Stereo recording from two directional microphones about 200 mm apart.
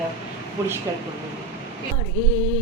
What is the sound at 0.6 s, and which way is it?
Speech, 15° right (ahead or behind).